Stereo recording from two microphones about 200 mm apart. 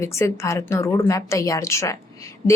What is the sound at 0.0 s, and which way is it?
Speech, 15° left (ahead or behind).